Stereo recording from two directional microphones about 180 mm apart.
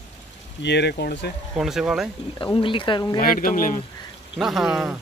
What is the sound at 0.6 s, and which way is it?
Speech, 70° left (ahead or behind).